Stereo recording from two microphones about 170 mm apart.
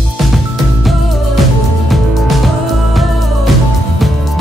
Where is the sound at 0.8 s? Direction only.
Centre (ahead or behind).